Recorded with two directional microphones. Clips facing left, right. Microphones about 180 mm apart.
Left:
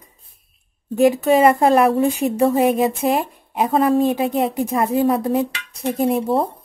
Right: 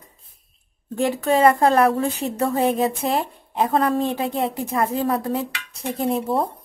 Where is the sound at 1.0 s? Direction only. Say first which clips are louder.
Left 4 dB; 15° left (ahead or behind).